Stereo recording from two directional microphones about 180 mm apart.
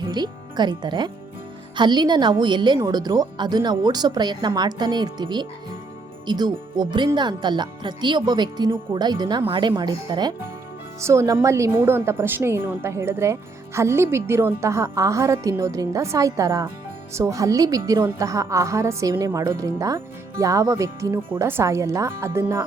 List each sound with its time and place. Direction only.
0.0 s a woman's voice: 25° right (ahead or behind)